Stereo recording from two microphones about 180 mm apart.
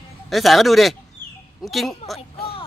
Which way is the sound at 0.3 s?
Centre (ahead or behind).